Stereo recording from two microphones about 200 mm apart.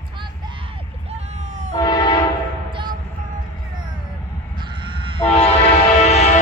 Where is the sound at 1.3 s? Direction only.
35° right (ahead or behind).